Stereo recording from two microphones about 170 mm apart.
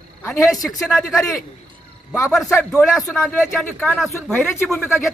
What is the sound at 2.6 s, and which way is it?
Speech, 5° left (ahead or behind).